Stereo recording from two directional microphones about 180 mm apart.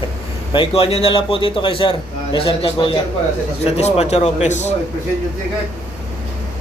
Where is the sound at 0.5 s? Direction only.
30° left (ahead or behind).